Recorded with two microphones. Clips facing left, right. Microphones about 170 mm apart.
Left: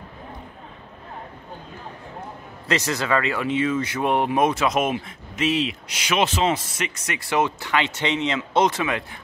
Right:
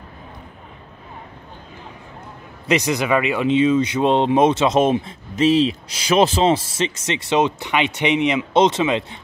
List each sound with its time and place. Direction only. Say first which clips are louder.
2.7 s speech: right 4 dB; 15° right (ahead or behind)